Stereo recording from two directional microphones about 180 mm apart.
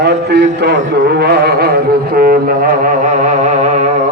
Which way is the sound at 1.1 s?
60° right (ahead or behind).